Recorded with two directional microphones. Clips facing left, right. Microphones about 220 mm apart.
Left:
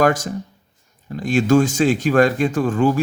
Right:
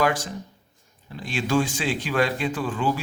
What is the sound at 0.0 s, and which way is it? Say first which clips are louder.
A man's voice: left 6 dB; 45° left (ahead or behind).